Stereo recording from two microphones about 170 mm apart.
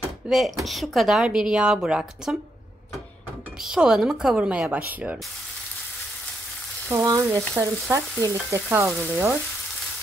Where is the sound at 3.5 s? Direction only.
5° right (ahead or behind).